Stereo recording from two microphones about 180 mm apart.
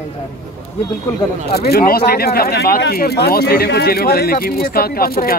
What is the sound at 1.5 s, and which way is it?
Speech, 60° left (ahead or behind).